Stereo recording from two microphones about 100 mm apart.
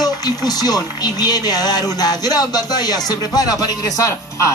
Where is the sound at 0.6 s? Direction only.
40° left (ahead or behind).